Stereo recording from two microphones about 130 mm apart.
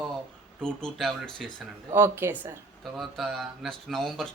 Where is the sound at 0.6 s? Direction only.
5° left (ahead or behind).